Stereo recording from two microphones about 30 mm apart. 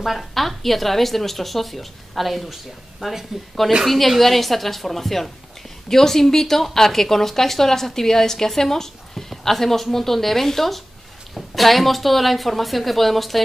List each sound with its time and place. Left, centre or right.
0.0 s a woman's voice: centre